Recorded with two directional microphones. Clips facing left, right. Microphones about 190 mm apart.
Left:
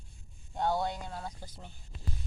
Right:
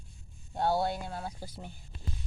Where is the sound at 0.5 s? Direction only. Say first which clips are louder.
Right 2 dB; 5° right (ahead or behind).